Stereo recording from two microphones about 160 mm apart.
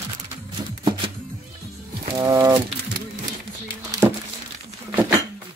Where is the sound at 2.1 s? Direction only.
20° right (ahead or behind).